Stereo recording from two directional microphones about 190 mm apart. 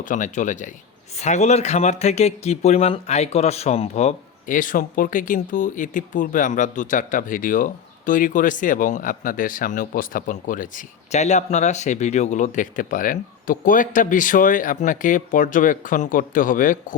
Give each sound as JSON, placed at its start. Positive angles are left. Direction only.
{"t": 0.0, "sound": "speech", "side_deg": 40}